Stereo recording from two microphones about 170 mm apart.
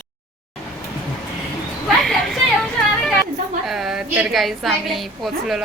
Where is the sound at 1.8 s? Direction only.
Centre (ahead or behind).